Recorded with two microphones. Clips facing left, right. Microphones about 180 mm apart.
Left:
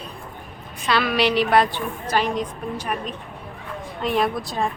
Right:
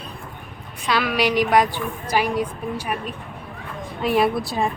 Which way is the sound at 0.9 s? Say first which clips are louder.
Even; 10° right (ahead or behind).